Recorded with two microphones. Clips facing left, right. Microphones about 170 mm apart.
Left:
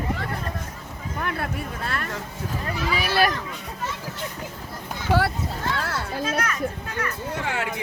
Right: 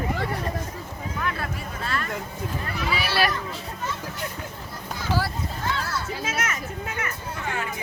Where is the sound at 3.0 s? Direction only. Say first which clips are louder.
Left 3 dB; 45° left (ahead or behind).